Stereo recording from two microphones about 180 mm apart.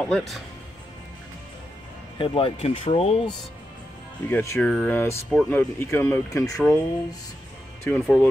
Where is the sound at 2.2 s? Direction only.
30° left (ahead or behind).